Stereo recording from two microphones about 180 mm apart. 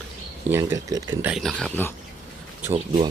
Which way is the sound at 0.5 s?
15° right (ahead or behind).